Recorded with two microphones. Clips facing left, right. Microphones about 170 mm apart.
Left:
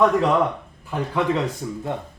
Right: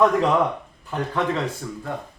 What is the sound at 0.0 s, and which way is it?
A man's voice, centre (ahead or behind).